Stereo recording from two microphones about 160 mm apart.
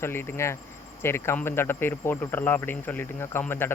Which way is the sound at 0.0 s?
15° left (ahead or behind).